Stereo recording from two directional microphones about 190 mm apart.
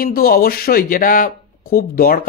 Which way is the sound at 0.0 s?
50° left (ahead or behind).